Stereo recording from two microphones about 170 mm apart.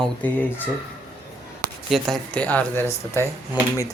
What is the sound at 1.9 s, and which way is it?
Speech, 5° left (ahead or behind).